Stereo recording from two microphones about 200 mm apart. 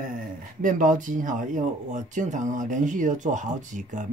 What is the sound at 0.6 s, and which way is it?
Speech, 40° right (ahead or behind).